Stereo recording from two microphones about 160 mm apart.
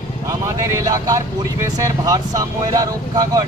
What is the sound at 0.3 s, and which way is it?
Vehicle, 20° right (ahead or behind).